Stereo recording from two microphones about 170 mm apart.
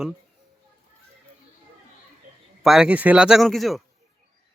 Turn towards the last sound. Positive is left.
turn(degrees=0)  # may be behind; listen again after turning